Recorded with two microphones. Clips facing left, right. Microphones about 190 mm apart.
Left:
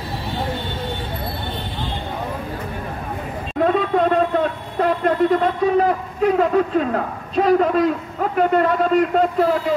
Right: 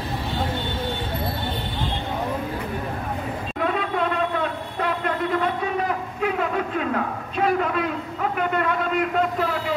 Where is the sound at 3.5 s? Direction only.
40° left (ahead or behind).